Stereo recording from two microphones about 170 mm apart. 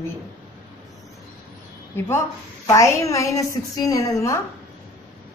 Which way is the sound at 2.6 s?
20° left (ahead or behind).